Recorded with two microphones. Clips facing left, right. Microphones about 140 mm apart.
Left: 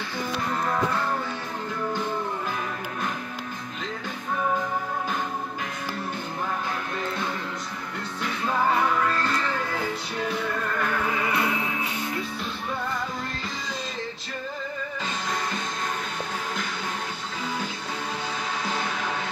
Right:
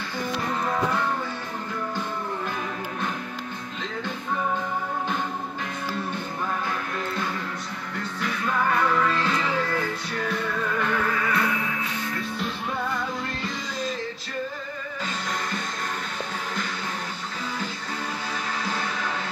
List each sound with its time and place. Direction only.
9.1 s music: centre (ahead or behind)
11.1 s music: 20° left (ahead or behind)